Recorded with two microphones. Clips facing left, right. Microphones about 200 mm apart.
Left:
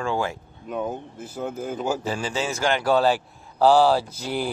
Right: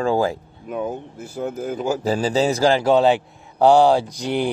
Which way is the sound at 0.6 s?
5° right (ahead or behind).